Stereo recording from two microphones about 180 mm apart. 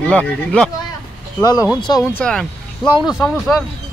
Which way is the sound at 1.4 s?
20° left (ahead or behind).